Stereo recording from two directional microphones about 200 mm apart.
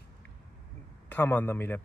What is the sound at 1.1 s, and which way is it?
Speech, 10° left (ahead or behind).